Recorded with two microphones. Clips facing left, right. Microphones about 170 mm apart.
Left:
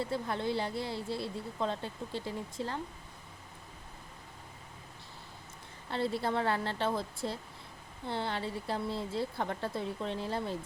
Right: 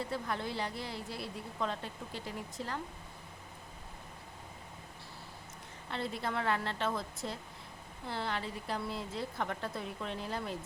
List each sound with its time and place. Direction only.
0.1 s speech: 25° left (ahead or behind)
5.9 s a woman's voice: 30° left (ahead or behind)